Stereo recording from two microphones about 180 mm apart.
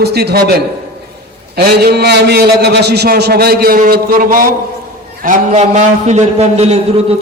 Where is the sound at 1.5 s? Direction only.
60° right (ahead or behind).